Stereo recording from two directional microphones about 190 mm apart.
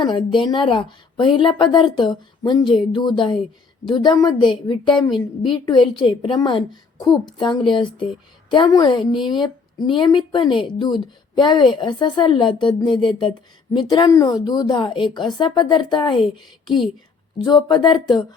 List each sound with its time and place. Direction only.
0.0 s a woman's voice: 25° left (ahead or behind)
17.7 s a woman's voice: 20° left (ahead or behind)